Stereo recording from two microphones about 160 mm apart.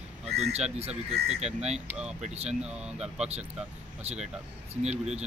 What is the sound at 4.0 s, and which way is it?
Speech, 40° right (ahead or behind).